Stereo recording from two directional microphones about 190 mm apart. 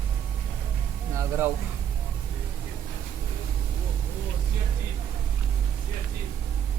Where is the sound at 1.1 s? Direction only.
15° right (ahead or behind).